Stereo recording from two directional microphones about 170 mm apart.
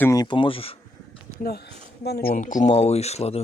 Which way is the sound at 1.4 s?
65° left (ahead or behind).